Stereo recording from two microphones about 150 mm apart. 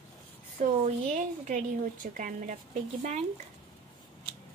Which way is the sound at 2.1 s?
60° right (ahead or behind).